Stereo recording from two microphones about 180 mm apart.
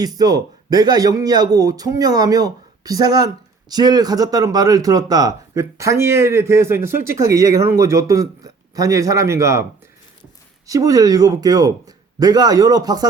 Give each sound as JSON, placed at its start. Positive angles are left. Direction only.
{"t": 0.0, "sound": "speech", "side_deg": -20}
{"t": 10.7, "sound": "speech", "side_deg": -20}